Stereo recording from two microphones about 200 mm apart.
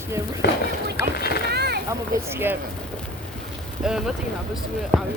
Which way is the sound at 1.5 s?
55° right (ahead or behind).